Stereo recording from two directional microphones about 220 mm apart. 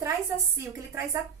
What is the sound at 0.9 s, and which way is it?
Speech, 15° right (ahead or behind).